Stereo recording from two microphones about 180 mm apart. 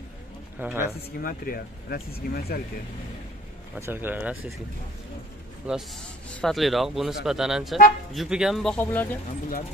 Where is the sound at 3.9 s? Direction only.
10° right (ahead or behind).